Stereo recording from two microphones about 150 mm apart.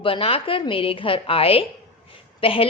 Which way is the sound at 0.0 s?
35° left (ahead or behind).